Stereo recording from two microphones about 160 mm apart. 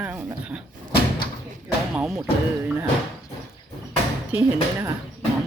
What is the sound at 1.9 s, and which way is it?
Speech, 5° right (ahead or behind).